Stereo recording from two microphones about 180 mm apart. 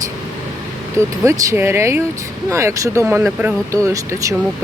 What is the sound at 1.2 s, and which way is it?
Speech, 15° right (ahead or behind).